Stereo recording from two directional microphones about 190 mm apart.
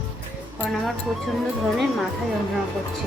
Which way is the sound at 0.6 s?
Centre (ahead or behind).